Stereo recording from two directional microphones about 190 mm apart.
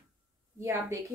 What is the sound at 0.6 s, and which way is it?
Speech, 15° right (ahead or behind).